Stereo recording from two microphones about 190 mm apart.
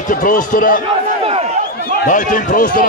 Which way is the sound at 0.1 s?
45° left (ahead or behind).